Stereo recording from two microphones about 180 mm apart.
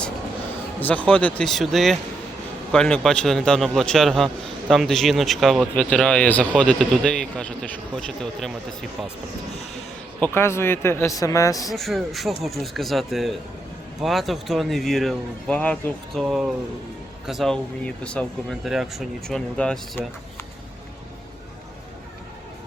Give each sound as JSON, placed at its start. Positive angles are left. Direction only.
{"t": 0.8, "sound": "speech", "side_deg": 10}
{"t": 10.3, "sound": "speech", "side_deg": 15}
{"t": 11.7, "sound": "speech", "side_deg": 0}
{"t": 16.2, "sound": "speech", "side_deg": -5}